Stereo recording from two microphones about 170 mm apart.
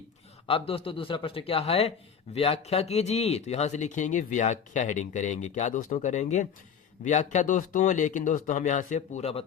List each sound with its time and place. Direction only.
0.4 s a man's voice: 35° left (ahead or behind)